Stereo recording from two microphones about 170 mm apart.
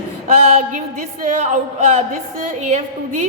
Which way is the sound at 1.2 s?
45° right (ahead or behind).